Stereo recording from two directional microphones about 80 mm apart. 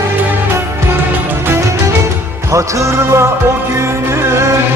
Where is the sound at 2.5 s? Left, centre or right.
Right.